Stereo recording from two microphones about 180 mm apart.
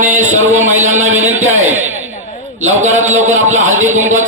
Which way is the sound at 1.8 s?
90° right.